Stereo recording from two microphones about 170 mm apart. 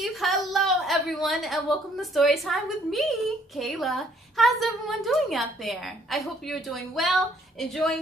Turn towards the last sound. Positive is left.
turn(degrees=0)  # may be behind; listen again after turning